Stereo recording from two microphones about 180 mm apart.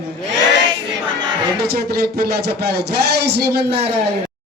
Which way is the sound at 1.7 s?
60° right (ahead or behind).